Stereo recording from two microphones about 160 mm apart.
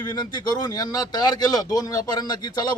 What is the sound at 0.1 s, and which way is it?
Speech, 25° left (ahead or behind).